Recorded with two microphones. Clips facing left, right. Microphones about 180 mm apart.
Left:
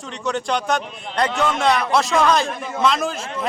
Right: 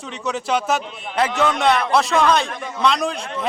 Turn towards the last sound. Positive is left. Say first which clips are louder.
# right 1 dB
turn(degrees=0)  # may be behind; listen again after turning